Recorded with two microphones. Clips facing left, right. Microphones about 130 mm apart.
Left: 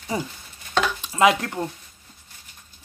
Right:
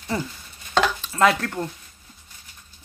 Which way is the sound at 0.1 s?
15° left (ahead or behind).